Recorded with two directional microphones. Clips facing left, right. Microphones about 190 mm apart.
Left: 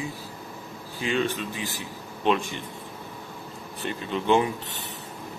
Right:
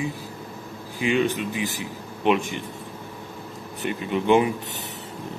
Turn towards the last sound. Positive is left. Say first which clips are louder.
# right 3 dB
turn(degrees=-15)  # may be behind; listen again after turning